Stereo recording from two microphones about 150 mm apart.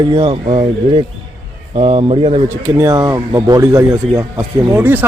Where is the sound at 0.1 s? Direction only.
35° right (ahead or behind).